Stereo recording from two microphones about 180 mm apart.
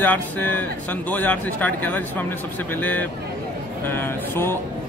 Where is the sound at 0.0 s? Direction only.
10° left (ahead or behind).